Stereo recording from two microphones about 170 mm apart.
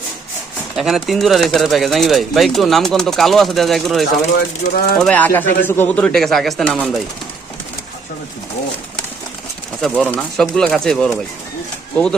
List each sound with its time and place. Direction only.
0.8 s speech: centre (ahead or behind)
4.0 s speech: 70° left (ahead or behind)
4.9 s speech: 5° left (ahead or behind)
9.8 s speech: centre (ahead or behind)